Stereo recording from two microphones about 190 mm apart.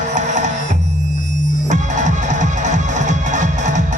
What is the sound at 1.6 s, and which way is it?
Music, 40° right (ahead or behind).